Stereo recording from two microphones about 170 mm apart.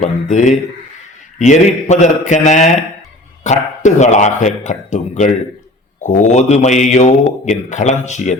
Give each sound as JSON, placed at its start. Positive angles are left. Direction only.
{"t": 0.0, "sound": "speech", "side_deg": 45}